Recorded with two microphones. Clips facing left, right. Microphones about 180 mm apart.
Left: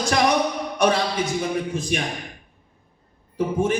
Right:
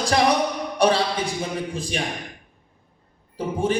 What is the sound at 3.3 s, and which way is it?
Speech, 30° right (ahead or behind).